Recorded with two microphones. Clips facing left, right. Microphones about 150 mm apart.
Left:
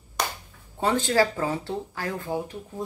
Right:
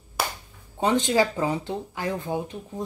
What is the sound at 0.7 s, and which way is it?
Speech, 20° right (ahead or behind).